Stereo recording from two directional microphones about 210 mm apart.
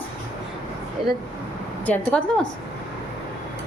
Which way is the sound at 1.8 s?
10° left (ahead or behind).